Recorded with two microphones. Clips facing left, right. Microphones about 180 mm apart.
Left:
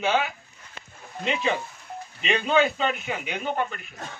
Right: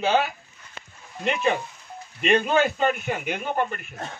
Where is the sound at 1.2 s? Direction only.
60° right (ahead or behind).